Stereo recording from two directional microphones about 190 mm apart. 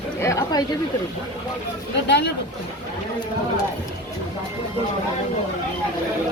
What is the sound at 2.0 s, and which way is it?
Speech, 65° left (ahead or behind).